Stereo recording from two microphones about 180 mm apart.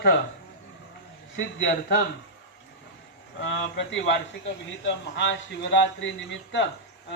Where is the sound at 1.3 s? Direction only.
90° left.